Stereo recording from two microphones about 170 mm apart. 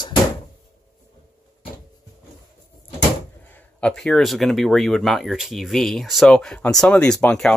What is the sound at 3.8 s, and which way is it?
Speech, 5° left (ahead or behind).